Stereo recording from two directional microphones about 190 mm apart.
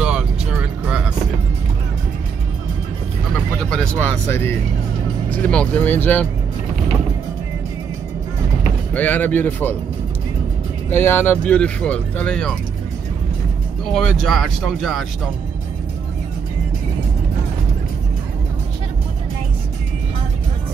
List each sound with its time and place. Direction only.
0.0 s music: 5° right (ahead or behind)
3.7 s speech: 5° left (ahead or behind)
8.9 s speech: 10° left (ahead or behind)
10.9 s speech: 10° left (ahead or behind)
13.9 s speech: centre (ahead or behind)